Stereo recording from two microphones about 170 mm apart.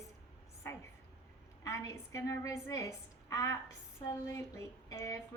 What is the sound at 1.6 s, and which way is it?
A woman's voice, 20° left (ahead or behind).